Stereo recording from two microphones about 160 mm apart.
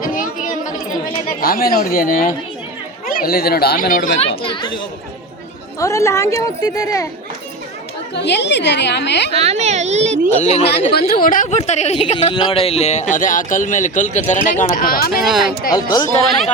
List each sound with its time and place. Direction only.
0.0 s chatter: 55° left (ahead or behind)
3.1 s speech: 65° left (ahead or behind)
4.4 s speech: 30° left (ahead or behind)
5.8 s speech: 20° left (ahead or behind)
8.1 s a woman's voice: 90° left
9.3 s speech: 40° right (ahead or behind)
10.4 s speech: 40° left (ahead or behind)
10.7 s a woman's voice: 90° left
11.1 s speech: 60° left (ahead or behind); by 12.1 s 45° left (ahead or behind)
12.1 s speech: 30° left (ahead or behind); by 14.9 s 50° left (ahead or behind)
15.1 s speech: centre (ahead or behind)
15.7 s speech: 25° left (ahead or behind)